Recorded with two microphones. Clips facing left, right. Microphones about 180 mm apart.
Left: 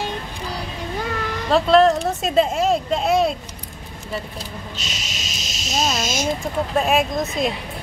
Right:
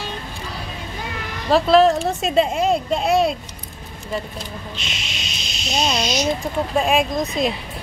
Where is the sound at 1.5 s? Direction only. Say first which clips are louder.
Right 1 dB; centre (ahead or behind).